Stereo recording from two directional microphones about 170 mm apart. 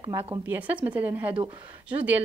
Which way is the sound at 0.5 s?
10° right (ahead or behind).